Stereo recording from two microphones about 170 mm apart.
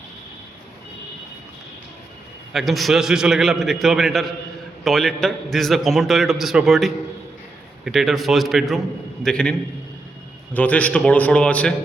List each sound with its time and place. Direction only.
2.5 s a man's voice: centre (ahead or behind)